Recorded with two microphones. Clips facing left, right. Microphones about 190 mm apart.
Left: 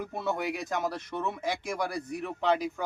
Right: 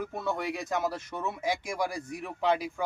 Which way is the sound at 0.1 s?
5° left (ahead or behind).